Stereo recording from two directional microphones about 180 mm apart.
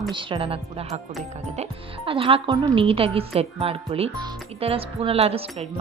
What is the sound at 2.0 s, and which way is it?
Speech, 30° right (ahead or behind).